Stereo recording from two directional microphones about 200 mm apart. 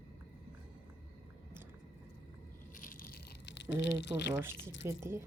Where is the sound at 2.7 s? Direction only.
45° left (ahead or behind).